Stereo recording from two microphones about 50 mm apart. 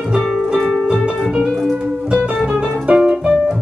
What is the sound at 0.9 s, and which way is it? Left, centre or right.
Music, centre.